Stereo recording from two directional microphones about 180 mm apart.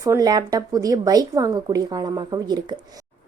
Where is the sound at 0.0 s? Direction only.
20° right (ahead or behind).